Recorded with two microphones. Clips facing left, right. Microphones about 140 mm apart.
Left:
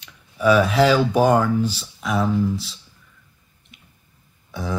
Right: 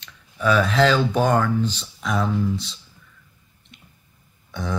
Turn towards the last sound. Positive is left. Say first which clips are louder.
# left 1 dB
turn(degrees=5)  # may be behind; listen again after turning